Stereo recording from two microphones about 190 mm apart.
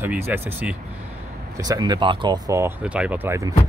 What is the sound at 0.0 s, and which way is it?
Speech, 10° right (ahead or behind).